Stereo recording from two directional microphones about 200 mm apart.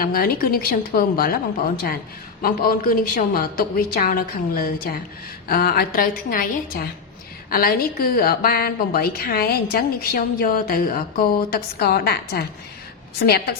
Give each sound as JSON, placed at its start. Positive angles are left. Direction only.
{"t": 0.0, "sound": "a woman's voice", "side_deg": 50}